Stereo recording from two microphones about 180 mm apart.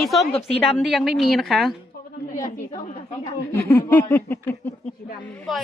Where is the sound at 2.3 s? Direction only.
20° left (ahead or behind).